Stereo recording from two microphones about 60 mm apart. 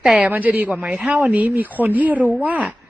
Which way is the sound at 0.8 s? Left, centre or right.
Centre.